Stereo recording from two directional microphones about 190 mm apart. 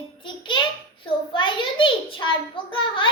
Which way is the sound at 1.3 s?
25° left (ahead or behind).